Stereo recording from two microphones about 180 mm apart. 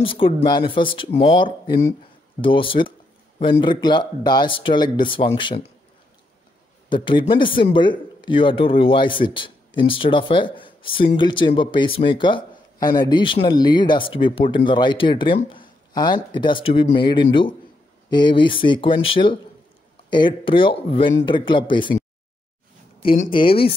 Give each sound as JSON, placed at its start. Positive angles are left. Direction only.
{"t": 0.0, "sound": "speech", "side_deg": 30}
{"t": 6.9, "sound": "speech", "side_deg": 25}
{"t": 23.3, "sound": "speech", "side_deg": 30}